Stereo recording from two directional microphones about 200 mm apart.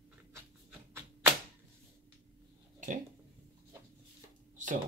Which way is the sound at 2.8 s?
40° right (ahead or behind).